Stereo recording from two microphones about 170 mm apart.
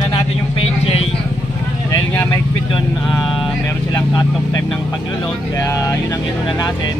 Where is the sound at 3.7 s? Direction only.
15° left (ahead or behind).